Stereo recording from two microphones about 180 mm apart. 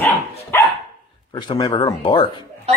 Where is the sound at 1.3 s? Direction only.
25° left (ahead or behind).